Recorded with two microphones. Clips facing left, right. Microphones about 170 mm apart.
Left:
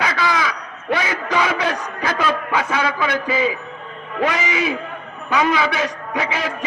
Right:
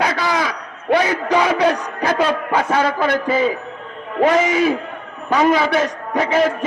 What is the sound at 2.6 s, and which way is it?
A man's voice, 45° right (ahead or behind).